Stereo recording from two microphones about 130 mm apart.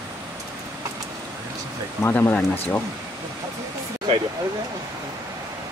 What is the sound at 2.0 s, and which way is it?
Speech, 15° left (ahead or behind).